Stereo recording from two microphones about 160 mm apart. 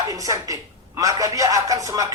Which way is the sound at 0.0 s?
20° right (ahead or behind).